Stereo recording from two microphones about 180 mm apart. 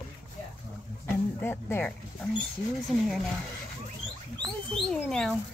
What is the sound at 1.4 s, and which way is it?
Speech, 10° left (ahead or behind).